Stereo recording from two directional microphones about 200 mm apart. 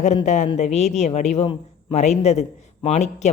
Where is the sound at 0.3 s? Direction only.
35° left (ahead or behind).